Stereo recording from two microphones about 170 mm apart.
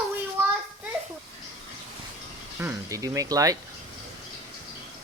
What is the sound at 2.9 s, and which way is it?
Speech, 20° right (ahead or behind).